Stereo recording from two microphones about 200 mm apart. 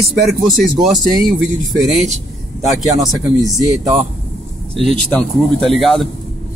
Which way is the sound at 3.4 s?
20° right (ahead or behind).